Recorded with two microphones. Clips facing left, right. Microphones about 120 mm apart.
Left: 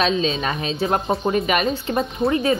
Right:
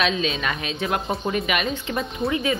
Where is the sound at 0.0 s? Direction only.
30° left (ahead or behind).